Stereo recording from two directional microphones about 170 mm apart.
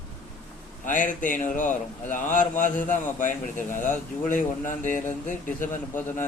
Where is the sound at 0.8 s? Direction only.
50° left (ahead or behind).